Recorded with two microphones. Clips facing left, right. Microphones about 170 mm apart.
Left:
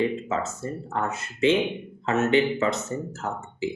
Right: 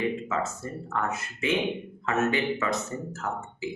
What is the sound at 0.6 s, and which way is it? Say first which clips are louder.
Speech: left 2 dB; 30° left (ahead or behind).